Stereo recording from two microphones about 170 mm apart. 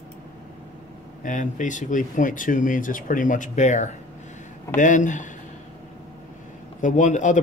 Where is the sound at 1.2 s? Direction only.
50° left (ahead or behind).